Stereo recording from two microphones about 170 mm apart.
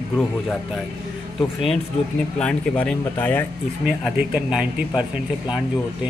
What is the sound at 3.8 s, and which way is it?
A man's voice, 5° right (ahead or behind).